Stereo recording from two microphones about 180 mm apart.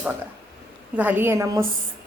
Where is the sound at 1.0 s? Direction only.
10° right (ahead or behind).